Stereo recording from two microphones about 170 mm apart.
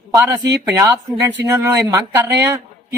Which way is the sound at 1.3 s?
15° right (ahead or behind).